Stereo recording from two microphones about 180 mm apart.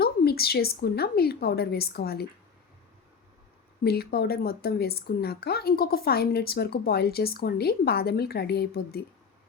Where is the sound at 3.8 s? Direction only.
60° left (ahead or behind).